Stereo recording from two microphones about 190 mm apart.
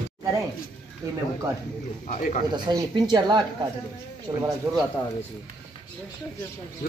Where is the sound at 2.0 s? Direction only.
45° left (ahead or behind).